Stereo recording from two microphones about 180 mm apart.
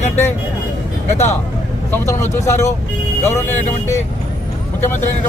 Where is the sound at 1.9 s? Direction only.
15° left (ahead or behind).